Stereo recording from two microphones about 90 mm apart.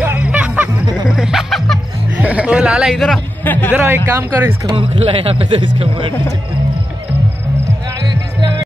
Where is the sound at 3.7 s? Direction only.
25° right (ahead or behind).